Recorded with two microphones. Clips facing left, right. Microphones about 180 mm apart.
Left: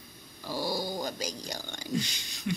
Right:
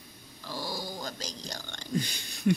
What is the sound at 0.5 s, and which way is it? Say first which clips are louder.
Dog: left 5 dB; 10° left (ahead or behind).